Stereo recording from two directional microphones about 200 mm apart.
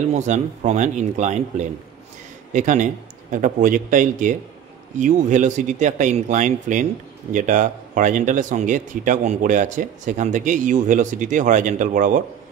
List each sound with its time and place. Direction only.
0.1 s speech: 35° right (ahead or behind)
2.5 s speech: 40° right (ahead or behind)